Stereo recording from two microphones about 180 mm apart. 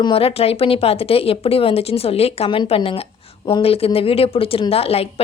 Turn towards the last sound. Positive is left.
turn(degrees=35)  # may be behind; listen again after turning